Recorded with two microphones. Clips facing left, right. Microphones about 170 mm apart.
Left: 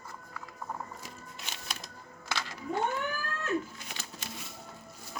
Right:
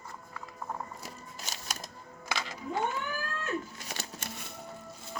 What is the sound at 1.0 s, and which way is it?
Music, 40° right (ahead or behind).